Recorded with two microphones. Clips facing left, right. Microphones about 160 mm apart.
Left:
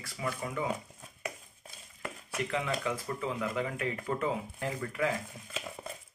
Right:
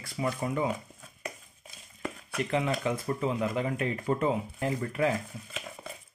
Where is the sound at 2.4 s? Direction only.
25° right (ahead or behind).